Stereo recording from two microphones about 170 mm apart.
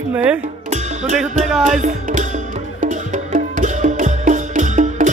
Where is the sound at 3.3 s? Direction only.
45° right (ahead or behind).